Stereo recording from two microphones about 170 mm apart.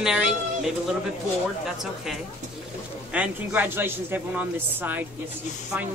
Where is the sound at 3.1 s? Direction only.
10° right (ahead or behind).